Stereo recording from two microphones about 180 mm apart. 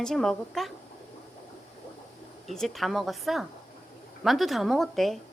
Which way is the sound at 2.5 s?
Centre (ahead or behind).